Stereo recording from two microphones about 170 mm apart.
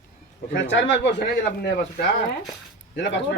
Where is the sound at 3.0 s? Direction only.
90° left.